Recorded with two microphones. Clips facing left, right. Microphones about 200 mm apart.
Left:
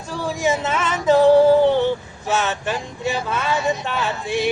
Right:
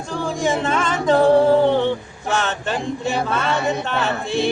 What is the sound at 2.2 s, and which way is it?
Speech, 5° left (ahead or behind).